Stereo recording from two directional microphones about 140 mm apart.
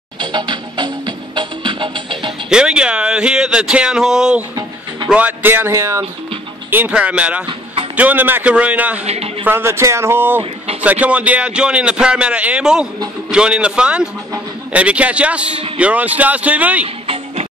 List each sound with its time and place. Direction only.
0.2 s music: 35° right (ahead or behind)
2.5 s a man's voice: 5° right (ahead or behind)
9.0 s a man's voice: 45° right (ahead or behind)
9.4 s a man's voice: 15° right (ahead or behind)
16.8 s music: 45° right (ahead or behind)